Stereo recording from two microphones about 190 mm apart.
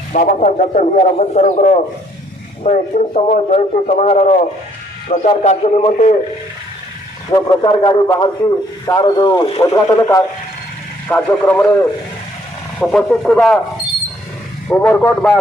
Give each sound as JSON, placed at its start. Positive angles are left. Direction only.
{"t": 0.1, "sound": "speech", "side_deg": 45}
{"t": 7.3, "sound": "a man's voice", "side_deg": 25}
{"t": 14.7, "sound": "speech", "side_deg": 10}